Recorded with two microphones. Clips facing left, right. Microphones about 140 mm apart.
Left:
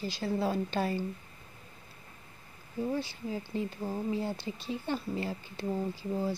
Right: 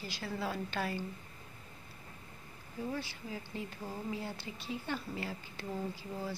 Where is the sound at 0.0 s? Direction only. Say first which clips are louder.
Left 7 dB; 30° left (ahead or behind).